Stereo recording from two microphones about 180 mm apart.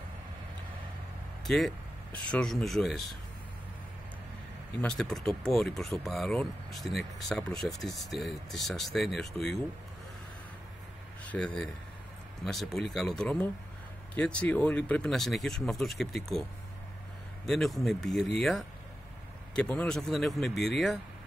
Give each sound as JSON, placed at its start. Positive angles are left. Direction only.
{"t": 1.4, "sound": "speech", "side_deg": 0}
{"t": 4.8, "sound": "speech", "side_deg": 0}
{"t": 11.2, "sound": "speech", "side_deg": 5}
{"t": 17.5, "sound": "speech", "side_deg": 0}